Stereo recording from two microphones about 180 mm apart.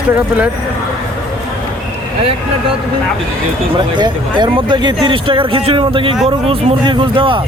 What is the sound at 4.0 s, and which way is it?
Speech, 25° right (ahead or behind).